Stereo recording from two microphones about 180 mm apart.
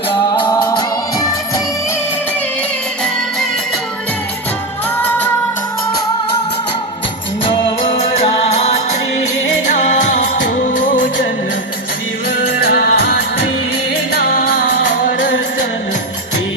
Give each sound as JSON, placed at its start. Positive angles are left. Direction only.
{"t": 0.1, "sound": "music", "side_deg": 25}
{"t": 10.6, "sound": "music", "side_deg": 45}
{"t": 12.6, "sound": "music of bollywood", "side_deg": 55}